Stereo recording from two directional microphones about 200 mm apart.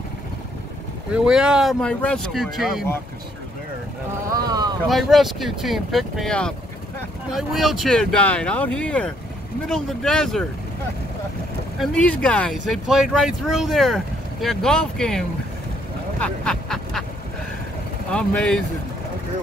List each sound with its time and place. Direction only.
1.1 s speech: 5° right (ahead or behind)
4.4 s boat: 20° right (ahead or behind)
4.8 s speech: centre (ahead or behind)
11.8 s speech: 5° left (ahead or behind)
16.2 s a sound: 5° left (ahead or behind)
18.1 s speech: 5° left (ahead or behind)